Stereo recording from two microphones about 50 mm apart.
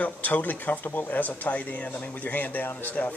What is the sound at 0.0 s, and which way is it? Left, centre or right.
Speech, left.